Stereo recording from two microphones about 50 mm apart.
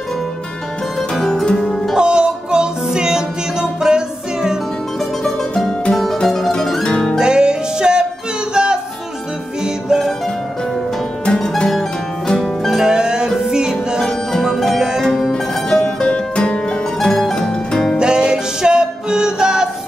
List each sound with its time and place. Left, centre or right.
1.1 s music: centre
2.0 s music: centre
5.2 s music: centre
7.2 s music: centre
11.4 s music: centre
12.4 s music: centre
12.8 s music: centre
14.0 s music: centre
14.8 s music: centre
15.0 s music: centre
15.3 s music: centre
17.9 s music: centre